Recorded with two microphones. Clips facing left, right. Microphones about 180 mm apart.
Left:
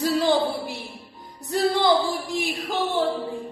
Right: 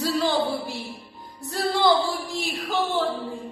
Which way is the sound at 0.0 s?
15° left (ahead or behind).